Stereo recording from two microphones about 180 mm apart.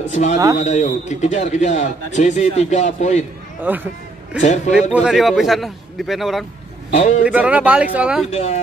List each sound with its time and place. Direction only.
0.1 s speech: 40° left (ahead or behind)
3.6 s speech: 10° right (ahead or behind)
4.4 s speech: 40° left (ahead or behind)
4.9 s a man's voice: centre (ahead or behind)
6.9 s a man's voice: 40° left (ahead or behind)
7.2 s speech: 5° right (ahead or behind)
8.3 s speech: 35° left (ahead or behind)